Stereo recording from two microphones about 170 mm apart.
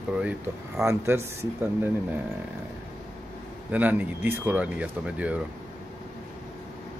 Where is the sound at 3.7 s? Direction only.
10° right (ahead or behind).